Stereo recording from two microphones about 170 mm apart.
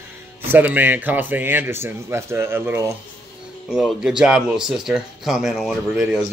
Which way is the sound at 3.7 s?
5° right (ahead or behind).